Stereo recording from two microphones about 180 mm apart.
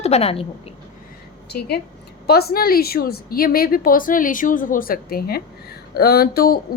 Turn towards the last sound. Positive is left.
turn(degrees=55)  # may be behind; listen again after turning